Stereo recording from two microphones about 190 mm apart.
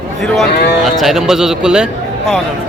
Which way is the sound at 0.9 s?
Centre (ahead or behind).